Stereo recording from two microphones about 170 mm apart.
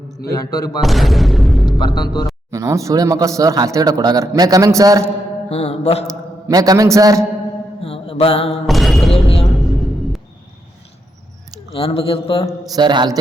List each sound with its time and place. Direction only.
0.3 s speech: 20° left (ahead or behind)
0.8 s speech: centre (ahead or behind)
1.8 s speech: 25° left (ahead or behind)
2.5 s speech: 20° right (ahead or behind)
5.5 s a man's voice: 35° left (ahead or behind)
6.5 s speech: 20° right (ahead or behind)
7.8 s mantra: 35° left (ahead or behind)
8.6 s music: centre (ahead or behind)
9.1 s a sound: 35° left (ahead or behind)
11.7 s a man's voice: 35° left (ahead or behind)
12.5 s speech: 25° right (ahead or behind)